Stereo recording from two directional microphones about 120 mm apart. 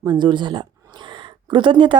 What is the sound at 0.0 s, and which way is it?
Speech, 40° right (ahead or behind).